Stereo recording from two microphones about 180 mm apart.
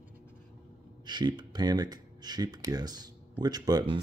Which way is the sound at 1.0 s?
25° right (ahead or behind).